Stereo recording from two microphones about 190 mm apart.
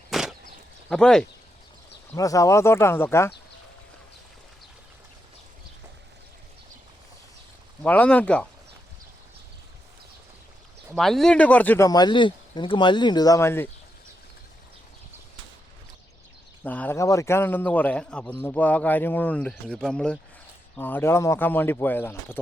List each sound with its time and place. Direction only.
0.1 s a sound: centre (ahead or behind)
0.9 s speech: 5° left (ahead or behind)
2.1 s a man's voice: 15° left (ahead or behind)
7.8 s a man's voice: 5° left (ahead or behind)
10.9 s a man's voice: centre (ahead or behind)
16.6 s a man's voice: 10° left (ahead or behind)